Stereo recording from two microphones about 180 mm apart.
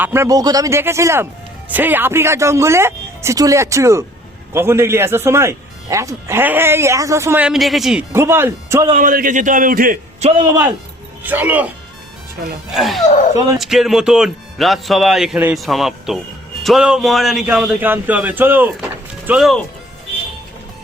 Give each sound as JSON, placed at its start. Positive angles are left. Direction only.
{"t": 0.0, "sound": "a man's voice", "side_deg": -15}
{"t": 8.1, "sound": "a man's voice", "side_deg": -15}
{"t": 9.0, "sound": "a man's voice", "side_deg": -50}
{"t": 10.2, "sound": "a man's voice", "side_deg": -30}
{"t": 11.2, "sound": "a man's voice", "side_deg": -10}
{"t": 12.7, "sound": "a man's voice", "side_deg": 0}